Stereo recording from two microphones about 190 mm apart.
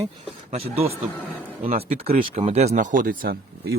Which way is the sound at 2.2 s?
30° right (ahead or behind).